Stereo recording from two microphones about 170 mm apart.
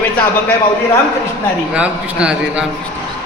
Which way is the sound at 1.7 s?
5° right (ahead or behind).